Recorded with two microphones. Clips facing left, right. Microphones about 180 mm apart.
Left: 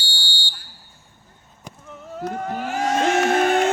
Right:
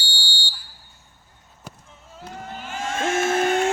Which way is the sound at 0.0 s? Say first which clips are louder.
Even; 40° right (ahead or behind).